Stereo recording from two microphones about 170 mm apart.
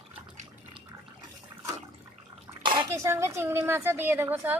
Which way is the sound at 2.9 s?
15° right (ahead or behind).